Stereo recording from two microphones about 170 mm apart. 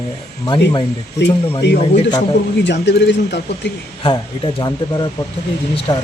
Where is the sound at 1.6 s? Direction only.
80° left.